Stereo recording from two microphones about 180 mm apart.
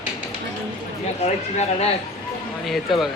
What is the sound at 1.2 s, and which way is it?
Speech, 35° left (ahead or behind).